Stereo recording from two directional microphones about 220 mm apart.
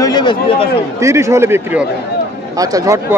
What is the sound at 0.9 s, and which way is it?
Speech, 15° right (ahead or behind).